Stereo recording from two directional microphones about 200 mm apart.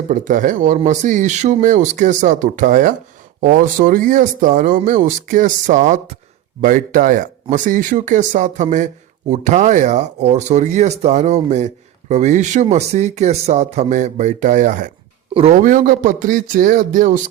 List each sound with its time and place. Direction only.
0.1 s speech: 40° right (ahead or behind)